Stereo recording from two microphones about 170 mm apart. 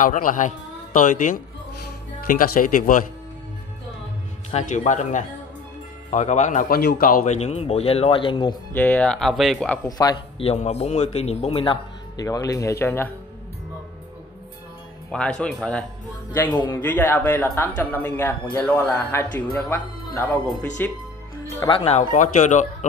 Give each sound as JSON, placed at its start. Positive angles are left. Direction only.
{"t": 0.0, "sound": "speech", "side_deg": 50}
{"t": 4.5, "sound": "speech", "side_deg": 45}
{"t": 7.3, "sound": "speech", "side_deg": 40}
{"t": 8.7, "sound": "speech", "side_deg": 10}
{"t": 9.8, "sound": "speech", "side_deg": 20}
{"t": 10.4, "sound": "speech", "side_deg": 40}
{"t": 15.0, "sound": "speech", "side_deg": 5}
{"t": 16.3, "sound": "speech", "side_deg": 25}
{"t": 16.6, "sound": "speech", "side_deg": 10}
{"t": 21.7, "sound": "speech", "side_deg": 40}